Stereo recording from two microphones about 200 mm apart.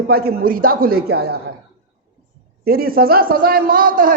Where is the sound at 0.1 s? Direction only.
50° right (ahead or behind).